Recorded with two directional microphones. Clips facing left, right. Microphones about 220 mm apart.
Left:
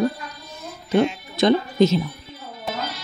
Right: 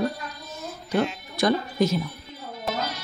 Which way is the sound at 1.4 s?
25° left (ahead or behind).